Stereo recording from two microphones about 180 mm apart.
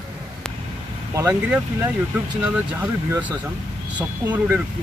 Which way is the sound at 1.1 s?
15° right (ahead or behind).